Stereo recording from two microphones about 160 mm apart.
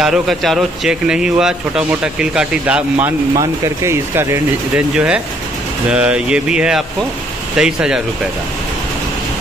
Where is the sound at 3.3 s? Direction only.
20° right (ahead or behind); by 8.0 s 5° right (ahead or behind).